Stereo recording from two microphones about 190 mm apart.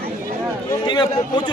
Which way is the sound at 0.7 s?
25° left (ahead or behind).